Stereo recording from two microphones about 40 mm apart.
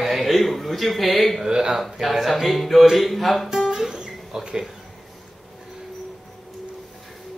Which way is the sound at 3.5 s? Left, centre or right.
Centre.